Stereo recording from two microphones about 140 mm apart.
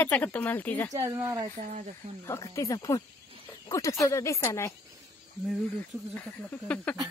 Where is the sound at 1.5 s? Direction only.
60° right (ahead or behind).